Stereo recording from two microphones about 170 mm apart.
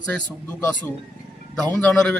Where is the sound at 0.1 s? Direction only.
10° left (ahead or behind).